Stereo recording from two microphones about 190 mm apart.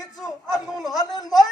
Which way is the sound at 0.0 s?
20° left (ahead or behind).